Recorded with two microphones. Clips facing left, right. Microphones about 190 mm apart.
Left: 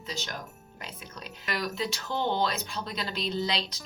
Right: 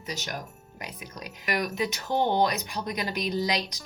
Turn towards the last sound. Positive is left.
turn(degrees=-15)  # may be behind; listen again after turning